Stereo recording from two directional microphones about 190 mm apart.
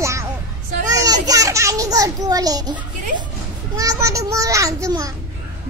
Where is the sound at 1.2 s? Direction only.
15° right (ahead or behind).